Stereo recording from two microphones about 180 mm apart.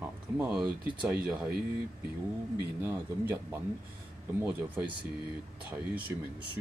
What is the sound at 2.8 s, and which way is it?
Speech, 15° right (ahead or behind).